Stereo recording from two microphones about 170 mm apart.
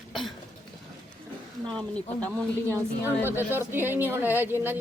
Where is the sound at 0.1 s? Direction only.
Centre (ahead or behind).